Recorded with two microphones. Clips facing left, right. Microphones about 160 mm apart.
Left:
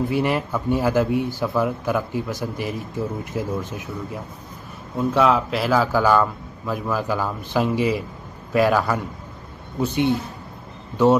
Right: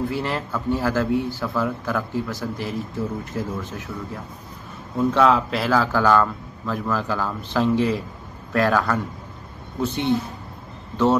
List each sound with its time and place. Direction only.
0.1 s a man's voice: 15° left (ahead or behind)
4.9 s a man's voice: 5° left (ahead or behind)